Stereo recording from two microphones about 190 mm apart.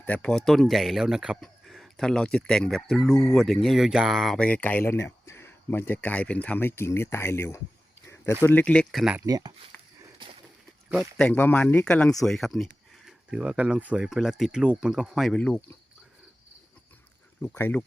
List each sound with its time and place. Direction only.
0.0 s speech: 5° left (ahead or behind)
9.2 s speech: 20° right (ahead or behind)
11.2 s speech: 10° left (ahead or behind)
17.4 s speech: 10° left (ahead or behind)